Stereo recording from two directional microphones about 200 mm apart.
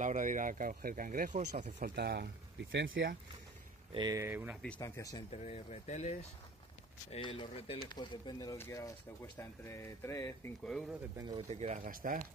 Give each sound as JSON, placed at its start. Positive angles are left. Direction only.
{"t": 0.0, "sound": "speech", "side_deg": -40}
{"t": 2.0, "sound": "speech", "side_deg": -55}
{"t": 2.7, "sound": "speech", "side_deg": -70}
{"t": 3.9, "sound": "speech", "side_deg": -20}
{"t": 4.7, "sound": "speech", "side_deg": 15}
{"t": 5.3, "sound": "speech", "side_deg": 30}
{"t": 7.1, "sound": "speech", "side_deg": 25}
{"t": 10.6, "sound": "speech", "side_deg": 0}
{"t": 11.1, "sound": "speech", "side_deg": -20}
{"t": 11.4, "sound": "speech", "side_deg": -35}